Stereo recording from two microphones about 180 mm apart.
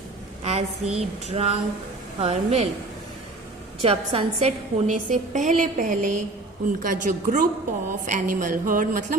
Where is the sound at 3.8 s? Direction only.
35° right (ahead or behind).